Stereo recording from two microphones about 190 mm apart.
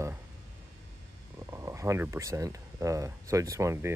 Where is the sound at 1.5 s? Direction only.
15° right (ahead or behind).